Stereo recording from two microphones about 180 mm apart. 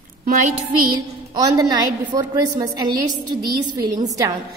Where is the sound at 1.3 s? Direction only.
20° right (ahead or behind).